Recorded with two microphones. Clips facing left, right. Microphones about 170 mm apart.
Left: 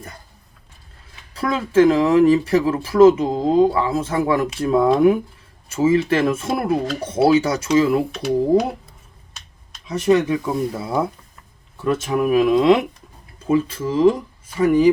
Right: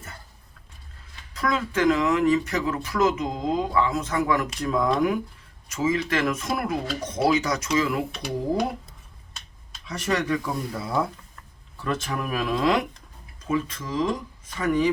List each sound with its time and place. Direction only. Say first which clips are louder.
1.3 s speech: left 4 dB; 30° left (ahead or behind)
8.1 s speech: left 9 dB; centre (ahead or behind)
9.9 s speech: left 8 dB; 20° left (ahead or behind)
12.1 s speech: left 14 dB; 20° left (ahead or behind)